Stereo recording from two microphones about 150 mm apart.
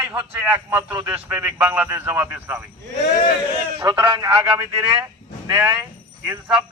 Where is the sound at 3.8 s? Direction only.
30° right (ahead or behind).